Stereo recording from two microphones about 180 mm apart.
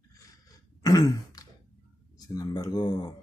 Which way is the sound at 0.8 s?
20° left (ahead or behind).